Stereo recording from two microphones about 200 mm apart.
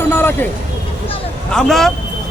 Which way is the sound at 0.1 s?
10° left (ahead or behind).